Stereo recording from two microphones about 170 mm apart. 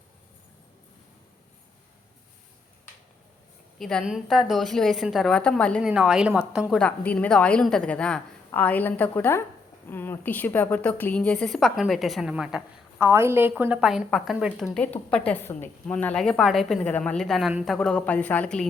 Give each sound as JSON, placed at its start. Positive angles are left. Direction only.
{"t": 3.8, "sound": "a woman's voice", "side_deg": 0}
{"t": 5.9, "sound": "a woman's voice", "side_deg": -5}
{"t": 6.7, "sound": "a woman's voice", "side_deg": 10}
{"t": 13.1, "sound": "a woman's voice", "side_deg": -15}